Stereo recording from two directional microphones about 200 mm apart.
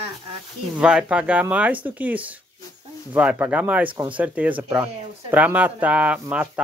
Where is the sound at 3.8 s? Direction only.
25° right (ahead or behind).